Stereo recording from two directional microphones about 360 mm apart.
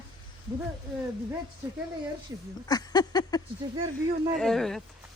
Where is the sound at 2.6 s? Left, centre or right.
Centre.